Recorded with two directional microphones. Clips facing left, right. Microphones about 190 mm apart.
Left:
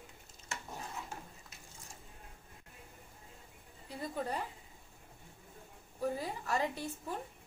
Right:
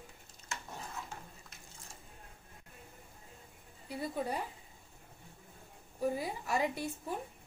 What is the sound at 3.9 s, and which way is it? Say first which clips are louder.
Speech: right 2 dB; 10° right (ahead or behind).